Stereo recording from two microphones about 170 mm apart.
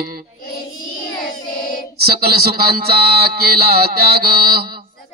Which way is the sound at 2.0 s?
65° right (ahead or behind).